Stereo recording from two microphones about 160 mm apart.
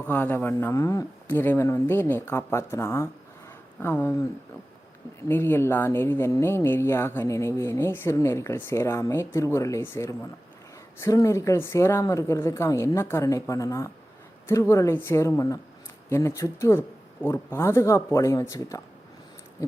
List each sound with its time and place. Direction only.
0.0 s speech: 10° left (ahead or behind)
5.3 s speech: 15° left (ahead or behind)